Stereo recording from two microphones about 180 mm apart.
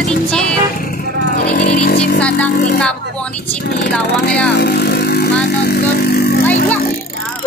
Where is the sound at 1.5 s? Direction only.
50° left (ahead or behind).